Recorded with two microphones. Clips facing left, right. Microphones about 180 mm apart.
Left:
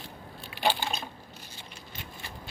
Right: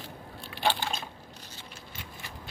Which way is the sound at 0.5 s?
10° left (ahead or behind).